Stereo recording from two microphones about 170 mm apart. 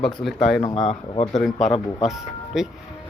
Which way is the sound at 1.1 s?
40° left (ahead or behind).